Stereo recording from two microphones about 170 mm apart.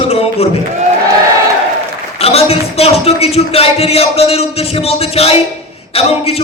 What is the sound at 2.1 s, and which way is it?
A man's voice, 35° left (ahead or behind).